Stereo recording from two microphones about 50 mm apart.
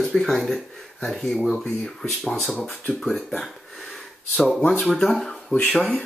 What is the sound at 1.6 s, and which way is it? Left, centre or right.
Speech, centre.